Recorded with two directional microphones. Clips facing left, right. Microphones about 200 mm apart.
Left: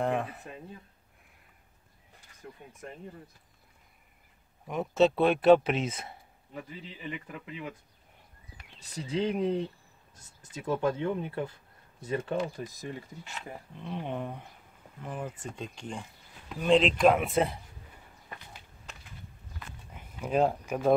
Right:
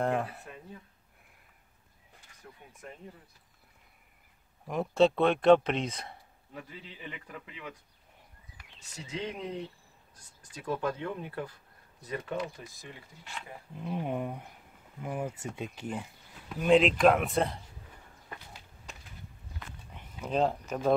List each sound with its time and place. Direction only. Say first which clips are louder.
0.0 s speech: even; centre (ahead or behind)
4.6 s speech: even; centre (ahead or behind)
8.7 s speech: left 7 dB; 35° left (ahead or behind)
13.7 s speech: right 2 dB; 5° right (ahead or behind)
19.9 s speech: left 3 dB; 5° left (ahead or behind)